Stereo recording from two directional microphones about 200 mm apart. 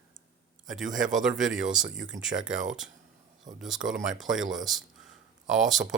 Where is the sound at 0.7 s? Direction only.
Centre (ahead or behind).